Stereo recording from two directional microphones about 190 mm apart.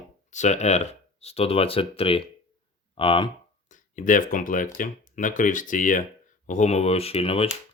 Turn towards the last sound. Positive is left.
turn(degrees=30)  # may be behind; listen again after turning